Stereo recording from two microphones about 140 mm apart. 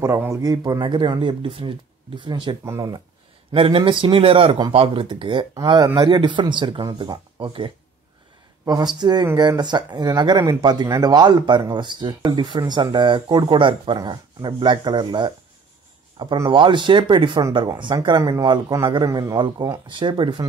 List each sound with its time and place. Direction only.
0.0 s speech: 20° right (ahead or behind)
2.6 s speech: 25° right (ahead or behind)
3.5 s speech: 40° right (ahead or behind)
16.4 s speech: 35° right (ahead or behind)